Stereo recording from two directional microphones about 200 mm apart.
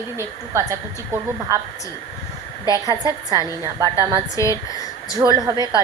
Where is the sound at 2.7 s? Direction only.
20° right (ahead or behind).